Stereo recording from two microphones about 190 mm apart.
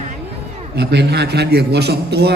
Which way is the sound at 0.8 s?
60° right (ahead or behind).